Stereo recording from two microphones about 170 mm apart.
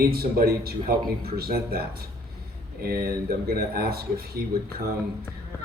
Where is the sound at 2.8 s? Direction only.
65° right (ahead or behind).